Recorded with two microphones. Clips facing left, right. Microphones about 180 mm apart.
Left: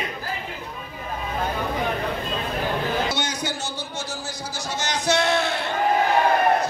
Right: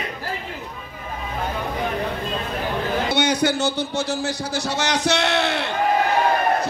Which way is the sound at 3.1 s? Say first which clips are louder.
Right 8 dB; 65° right (ahead or behind).